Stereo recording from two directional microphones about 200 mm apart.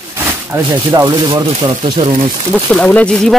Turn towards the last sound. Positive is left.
turn(degrees=0)  # may be behind; listen again after turning